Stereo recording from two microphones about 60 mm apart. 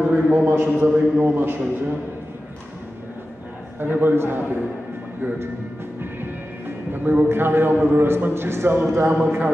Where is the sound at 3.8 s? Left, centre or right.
Right.